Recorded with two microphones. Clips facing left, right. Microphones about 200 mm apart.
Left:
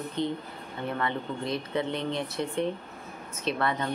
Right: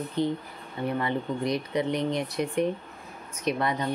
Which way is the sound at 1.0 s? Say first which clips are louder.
Right 3 dB; 15° right (ahead or behind).